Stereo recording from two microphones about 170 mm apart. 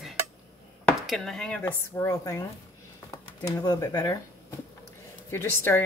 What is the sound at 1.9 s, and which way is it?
A woman's voice, 20° left (ahead or behind).